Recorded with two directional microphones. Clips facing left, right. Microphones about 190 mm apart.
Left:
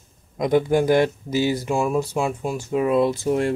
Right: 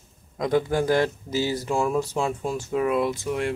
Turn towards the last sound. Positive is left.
turn(degrees=35)  # may be behind; listen again after turning